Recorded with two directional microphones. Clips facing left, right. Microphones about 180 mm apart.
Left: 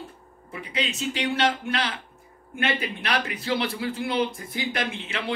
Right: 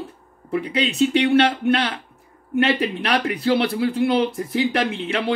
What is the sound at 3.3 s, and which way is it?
Speech, 65° right (ahead or behind).